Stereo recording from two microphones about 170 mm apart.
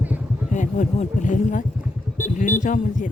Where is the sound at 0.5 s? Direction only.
45° left (ahead or behind).